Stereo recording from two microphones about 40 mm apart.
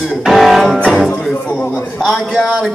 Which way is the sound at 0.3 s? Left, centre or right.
Centre.